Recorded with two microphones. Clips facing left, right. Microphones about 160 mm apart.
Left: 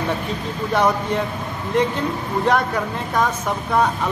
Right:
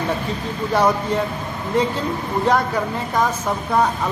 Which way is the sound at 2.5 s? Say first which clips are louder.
Right 1 dB; 5° right (ahead or behind).